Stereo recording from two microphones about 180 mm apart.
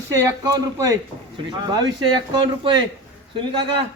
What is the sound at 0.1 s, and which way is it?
A man's voice, 15° right (ahead or behind).